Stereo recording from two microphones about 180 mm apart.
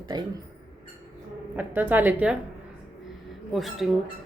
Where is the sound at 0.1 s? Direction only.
20° right (ahead or behind).